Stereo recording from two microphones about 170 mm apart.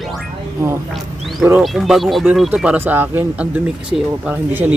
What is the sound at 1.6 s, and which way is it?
A man's voice, centre (ahead or behind).